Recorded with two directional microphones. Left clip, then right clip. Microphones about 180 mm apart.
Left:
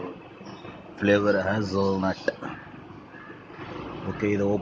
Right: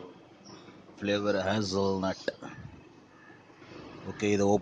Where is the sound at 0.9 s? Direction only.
20° right (ahead or behind).